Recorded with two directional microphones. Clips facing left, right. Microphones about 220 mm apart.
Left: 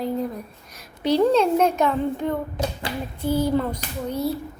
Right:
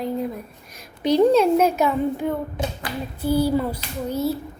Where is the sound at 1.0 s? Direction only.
15° right (ahead or behind).